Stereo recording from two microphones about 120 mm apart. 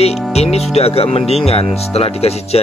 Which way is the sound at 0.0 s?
60° left (ahead or behind).